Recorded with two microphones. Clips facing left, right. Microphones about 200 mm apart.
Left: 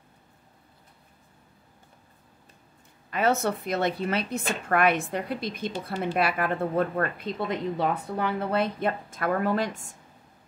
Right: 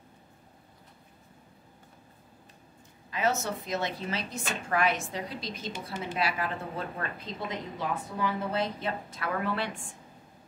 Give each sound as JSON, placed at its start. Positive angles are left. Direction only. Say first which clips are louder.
{"t": 3.1, "sound": "a woman's voice", "louder": "left 5 dB", "side_deg": 60}